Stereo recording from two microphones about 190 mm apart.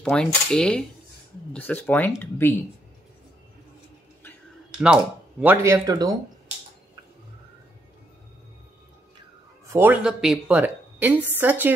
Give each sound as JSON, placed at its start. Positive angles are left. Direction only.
{"t": 0.0, "sound": "speech", "side_deg": 5}
{"t": 4.7, "sound": "a woman's voice", "side_deg": -5}
{"t": 9.7, "sound": "a woman's voice", "side_deg": -10}